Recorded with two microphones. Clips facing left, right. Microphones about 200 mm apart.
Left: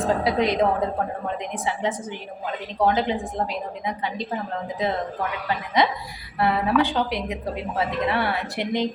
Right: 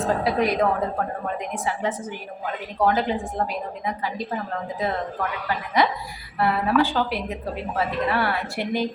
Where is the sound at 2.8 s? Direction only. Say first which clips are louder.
Even; 20° left (ahead or behind).